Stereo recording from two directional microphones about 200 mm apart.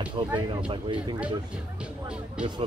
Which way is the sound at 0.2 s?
25° right (ahead or behind).